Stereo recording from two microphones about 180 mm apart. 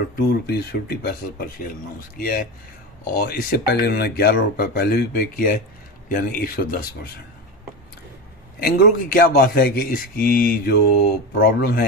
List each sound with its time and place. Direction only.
0.3 s a man's voice: 60° left (ahead or behind)
8.5 s a man's voice: 55° left (ahead or behind)